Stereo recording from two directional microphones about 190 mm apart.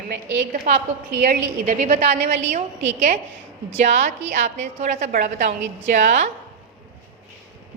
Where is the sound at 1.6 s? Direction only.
40° right (ahead or behind).